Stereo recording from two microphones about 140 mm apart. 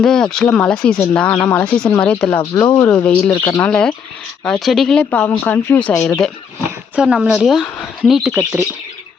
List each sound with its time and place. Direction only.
0.0 s a woman's voice: 5° left (ahead or behind)
2.4 s speech: 25° left (ahead or behind)
2.7 s a woman's voice: 10° left (ahead or behind)
6.9 s a woman's voice: 5° right (ahead or behind)